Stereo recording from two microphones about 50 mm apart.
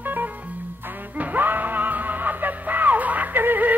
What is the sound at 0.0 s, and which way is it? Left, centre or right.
Music, right.